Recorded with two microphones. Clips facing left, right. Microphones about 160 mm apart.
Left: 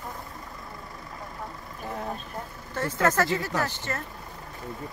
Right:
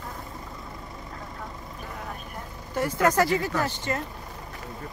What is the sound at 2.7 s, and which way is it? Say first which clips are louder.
Speech: right 2 dB; 15° right (ahead or behind).